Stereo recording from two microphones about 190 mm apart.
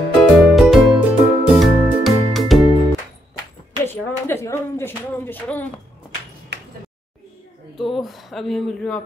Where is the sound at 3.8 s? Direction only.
15° left (ahead or behind).